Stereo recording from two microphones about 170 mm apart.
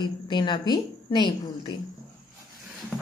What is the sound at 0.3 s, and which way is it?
A woman's voice, 25° left (ahead or behind).